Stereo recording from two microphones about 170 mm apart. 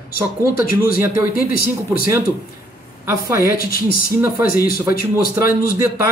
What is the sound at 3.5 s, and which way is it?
A man's voice, 60° left (ahead or behind).